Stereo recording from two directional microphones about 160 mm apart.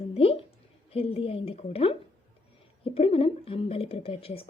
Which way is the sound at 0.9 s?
35° left (ahead or behind).